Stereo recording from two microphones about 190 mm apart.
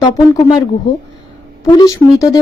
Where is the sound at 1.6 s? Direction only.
15° left (ahead or behind).